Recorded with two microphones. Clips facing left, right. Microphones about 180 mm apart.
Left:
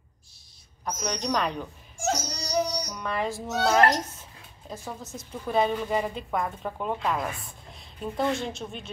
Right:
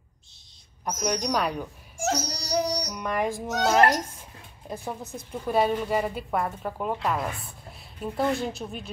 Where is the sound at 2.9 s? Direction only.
15° right (ahead or behind).